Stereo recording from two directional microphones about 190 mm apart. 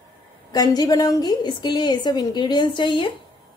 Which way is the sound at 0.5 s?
20° left (ahead or behind).